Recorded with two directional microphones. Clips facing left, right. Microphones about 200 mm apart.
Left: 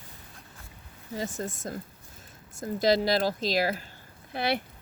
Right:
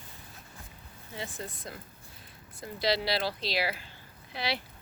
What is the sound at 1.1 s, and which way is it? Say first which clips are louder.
Speech: left 7 dB; 45° left (ahead or behind).